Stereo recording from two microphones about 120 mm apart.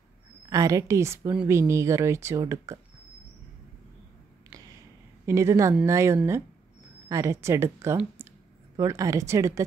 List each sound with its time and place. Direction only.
0.5 s speech: 30° right (ahead or behind)
5.2 s speech: 25° right (ahead or behind)
8.2 s a sound: 25° right (ahead or behind)
8.7 s speech: 25° right (ahead or behind)